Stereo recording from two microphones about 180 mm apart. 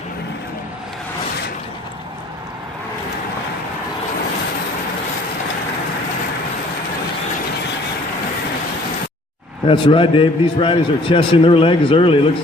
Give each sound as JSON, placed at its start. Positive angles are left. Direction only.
{"t": 9.6, "sound": "a man's voice", "side_deg": 30}